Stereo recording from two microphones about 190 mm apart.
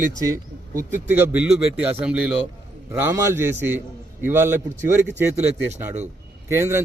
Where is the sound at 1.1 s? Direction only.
5° right (ahead or behind).